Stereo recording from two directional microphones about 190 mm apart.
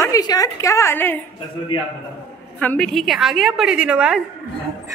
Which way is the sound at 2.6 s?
5° left (ahead or behind).